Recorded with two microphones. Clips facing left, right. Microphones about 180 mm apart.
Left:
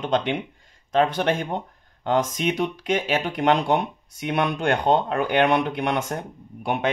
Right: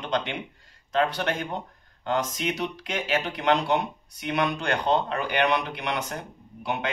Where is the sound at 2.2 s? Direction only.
50° left (ahead or behind).